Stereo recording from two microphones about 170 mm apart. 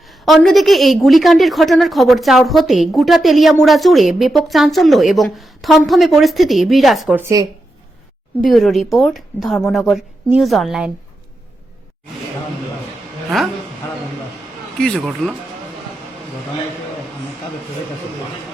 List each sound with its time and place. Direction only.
0.1 s a woman's voice: centre (ahead or behind)
7.2 s speech: 15° right (ahead or behind)
8.4 s a woman's voice: centre (ahead or behind)
13.3 s a woman's voice: centre (ahead or behind)
14.8 s a woman's voice: 5° left (ahead or behind)